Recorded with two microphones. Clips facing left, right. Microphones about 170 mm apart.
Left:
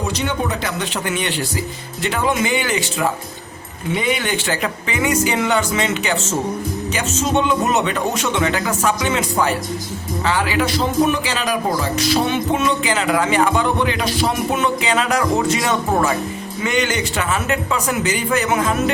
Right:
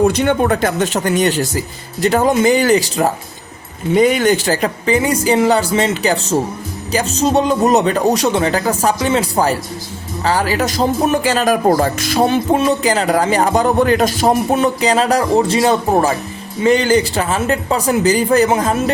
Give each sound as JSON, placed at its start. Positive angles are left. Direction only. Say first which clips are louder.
{"t": 0.0, "sound": "speech", "louder": "right 9 dB", "side_deg": -55}
{"t": 12.3, "sound": "speech", "louder": "right 5 dB", "side_deg": -40}